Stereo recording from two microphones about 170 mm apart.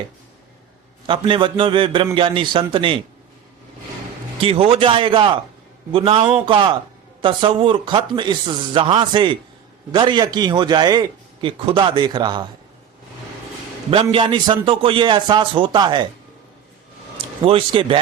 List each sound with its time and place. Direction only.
1.0 s a man's voice: 30° right (ahead or behind)
4.4 s a man's voice: 35° right (ahead or behind)
13.9 s a man's voice: 30° right (ahead or behind)
17.4 s a man's voice: 30° right (ahead or behind)